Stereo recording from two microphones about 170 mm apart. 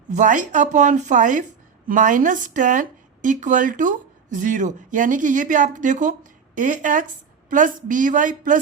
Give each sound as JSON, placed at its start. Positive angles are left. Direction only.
{"t": 0.1, "sound": "speech", "side_deg": -45}